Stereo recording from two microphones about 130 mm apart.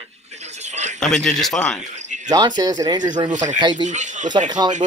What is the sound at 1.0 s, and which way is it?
Speech, 5° left (ahead or behind).